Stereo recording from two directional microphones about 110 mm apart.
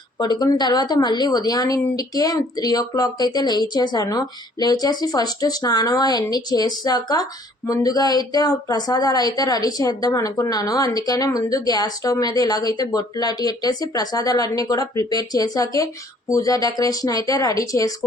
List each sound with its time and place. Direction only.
0.2 s speech: 40° left (ahead or behind)